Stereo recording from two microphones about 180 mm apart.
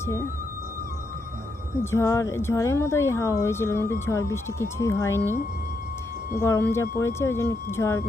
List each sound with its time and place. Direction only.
1.8 s speech: 15° left (ahead or behind)
6.4 s speech: 15° left (ahead or behind)